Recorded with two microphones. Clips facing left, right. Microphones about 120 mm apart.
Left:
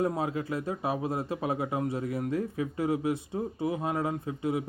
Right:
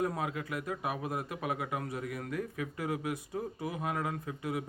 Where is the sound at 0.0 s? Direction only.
30° left (ahead or behind).